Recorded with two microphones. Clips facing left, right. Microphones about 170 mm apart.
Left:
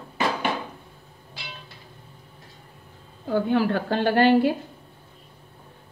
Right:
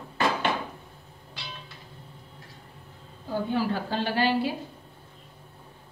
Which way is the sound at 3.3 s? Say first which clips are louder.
Left 5 dB; 65° left (ahead or behind).